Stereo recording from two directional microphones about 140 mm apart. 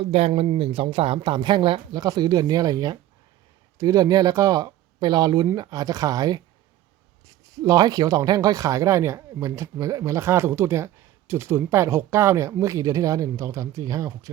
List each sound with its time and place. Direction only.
0.0 s speech: 45° right (ahead or behind); by 14.1 s 25° right (ahead or behind)